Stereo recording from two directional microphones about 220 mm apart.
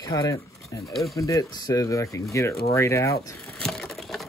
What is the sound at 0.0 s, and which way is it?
Speech, 15° left (ahead or behind).